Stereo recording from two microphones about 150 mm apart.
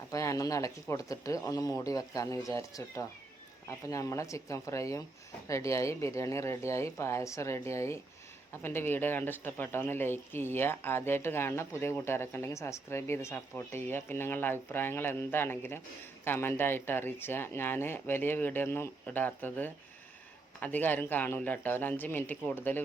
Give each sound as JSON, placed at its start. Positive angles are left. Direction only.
{"t": 0.1, "sound": "speech", "side_deg": 20}